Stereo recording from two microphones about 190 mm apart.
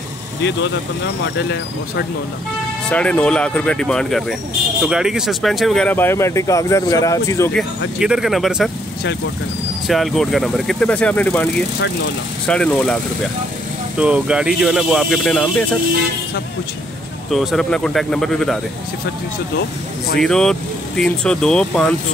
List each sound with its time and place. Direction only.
1.2 s speech: 65° left (ahead or behind)
2.9 s speech: 5° left (ahead or behind)
8.0 s speech: 5° right (ahead or behind)
9.8 s speech: centre (ahead or behind)
12.4 s speech: 5° left (ahead or behind)
13.9 s speech: 5° right (ahead or behind)
17.3 s speech: centre (ahead or behind)
20.2 s speech: 5° left (ahead or behind)